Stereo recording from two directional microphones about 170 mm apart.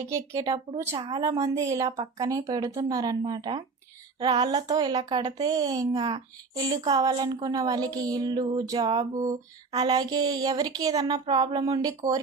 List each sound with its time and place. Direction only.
0.0 s speech: 20° right (ahead or behind)